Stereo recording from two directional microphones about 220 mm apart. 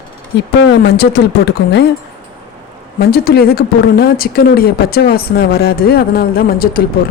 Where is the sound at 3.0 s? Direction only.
45° left (ahead or behind).